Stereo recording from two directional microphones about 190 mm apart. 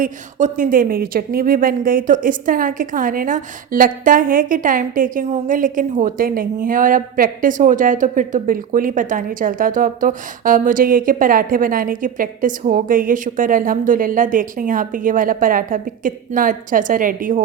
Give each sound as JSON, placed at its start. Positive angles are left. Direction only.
{"t": 0.0, "sound": "speech", "side_deg": -40}